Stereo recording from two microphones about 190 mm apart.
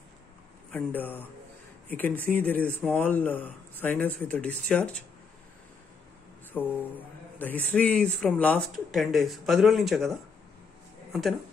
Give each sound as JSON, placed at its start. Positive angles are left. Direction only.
{"t": 0.7, "sound": "speech", "side_deg": 10}
{"t": 6.5, "sound": "speech", "side_deg": 5}